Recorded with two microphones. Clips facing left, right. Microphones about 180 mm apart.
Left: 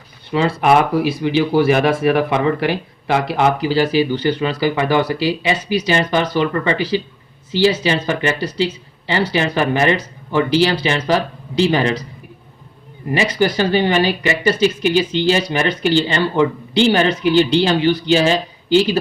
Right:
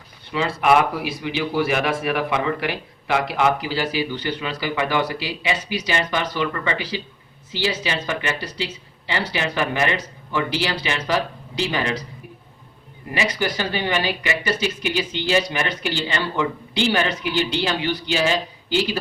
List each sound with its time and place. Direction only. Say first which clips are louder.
0.3 s speech: left 4 dB; 35° left (ahead or behind)
13.1 s speech: left 7 dB; 30° left (ahead or behind)